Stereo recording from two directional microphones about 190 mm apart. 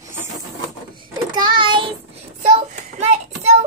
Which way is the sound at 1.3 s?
25° right (ahead or behind).